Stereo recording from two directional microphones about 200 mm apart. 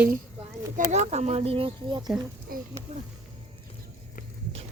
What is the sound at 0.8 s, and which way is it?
Speech, 35° right (ahead or behind).